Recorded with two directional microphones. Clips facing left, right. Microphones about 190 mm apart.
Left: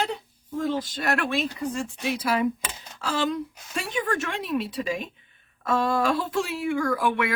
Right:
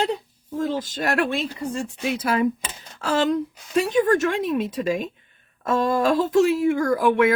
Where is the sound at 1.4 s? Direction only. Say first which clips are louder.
Right 1 dB; 30° right (ahead or behind).